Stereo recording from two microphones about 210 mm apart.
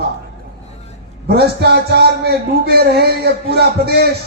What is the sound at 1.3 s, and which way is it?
A man's voice, 50° right (ahead or behind).